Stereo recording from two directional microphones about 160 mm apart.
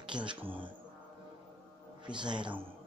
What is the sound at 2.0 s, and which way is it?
Speech, 30° right (ahead or behind).